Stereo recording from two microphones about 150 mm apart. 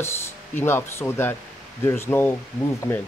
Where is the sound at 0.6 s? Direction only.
15° left (ahead or behind).